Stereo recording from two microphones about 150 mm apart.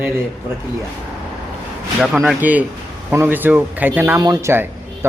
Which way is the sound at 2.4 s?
10° right (ahead or behind).